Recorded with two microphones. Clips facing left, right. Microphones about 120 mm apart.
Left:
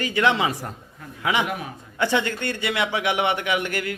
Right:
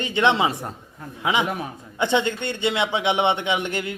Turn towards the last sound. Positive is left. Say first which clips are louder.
# even
turn(degrees=-20)  # may be behind; listen again after turning